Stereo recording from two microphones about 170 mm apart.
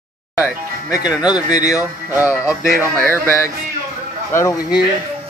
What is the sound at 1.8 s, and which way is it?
Music, 10° right (ahead or behind).